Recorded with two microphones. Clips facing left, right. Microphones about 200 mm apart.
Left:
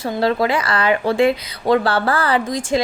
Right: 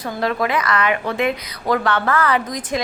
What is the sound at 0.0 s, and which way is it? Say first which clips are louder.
Speech: left 3 dB; 30° left (ahead or behind).